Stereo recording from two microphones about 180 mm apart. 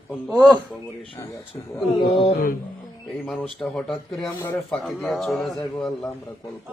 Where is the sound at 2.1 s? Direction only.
30° left (ahead or behind).